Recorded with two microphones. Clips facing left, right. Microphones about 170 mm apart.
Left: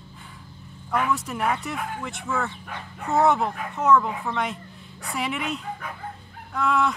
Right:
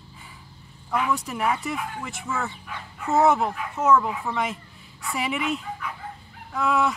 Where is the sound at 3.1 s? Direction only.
Centre (ahead or behind).